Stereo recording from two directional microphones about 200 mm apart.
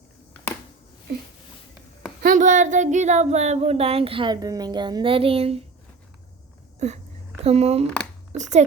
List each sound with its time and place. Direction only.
2.2 s speech: 40° right (ahead or behind)
6.7 s a sound: 35° right (ahead or behind)
7.4 s a child's voice: 30° right (ahead or behind)